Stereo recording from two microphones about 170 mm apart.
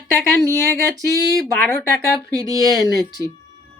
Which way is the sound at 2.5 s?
20° right (ahead or behind).